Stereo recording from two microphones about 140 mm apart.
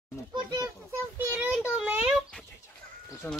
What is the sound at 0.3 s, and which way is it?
Children playing, 30° right (ahead or behind).